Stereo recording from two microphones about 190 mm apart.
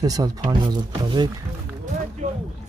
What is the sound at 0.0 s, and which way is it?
Speech, 20° right (ahead or behind).